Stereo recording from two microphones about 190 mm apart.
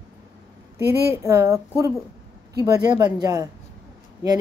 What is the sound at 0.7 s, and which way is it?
Speech, 15° right (ahead or behind).